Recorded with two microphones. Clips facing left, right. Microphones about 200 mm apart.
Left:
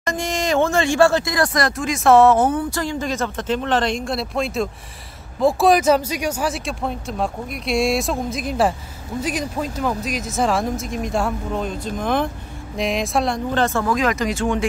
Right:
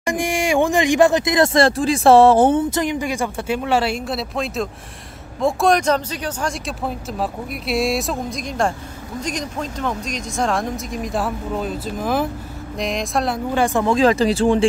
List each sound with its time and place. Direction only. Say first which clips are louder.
0.0 s speech: right 2 dB; 15° right (ahead or behind)
13.8 s speech: right 5 dB; 30° right (ahead or behind)